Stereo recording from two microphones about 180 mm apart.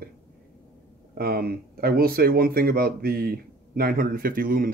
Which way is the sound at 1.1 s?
55° right (ahead or behind).